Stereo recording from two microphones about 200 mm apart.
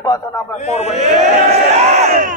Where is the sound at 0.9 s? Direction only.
35° right (ahead or behind).